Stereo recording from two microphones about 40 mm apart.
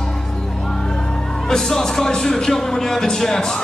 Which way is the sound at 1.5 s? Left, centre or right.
Centre.